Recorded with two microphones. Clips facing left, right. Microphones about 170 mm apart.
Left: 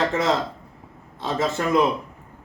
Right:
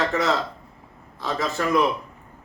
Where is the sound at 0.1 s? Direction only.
30° left (ahead or behind).